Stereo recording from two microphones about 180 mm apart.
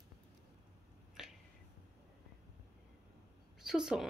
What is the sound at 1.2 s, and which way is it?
Finger snapping, 5° right (ahead or behind).